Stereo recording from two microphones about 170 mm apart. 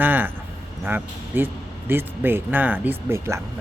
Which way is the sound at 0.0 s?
10° right (ahead or behind).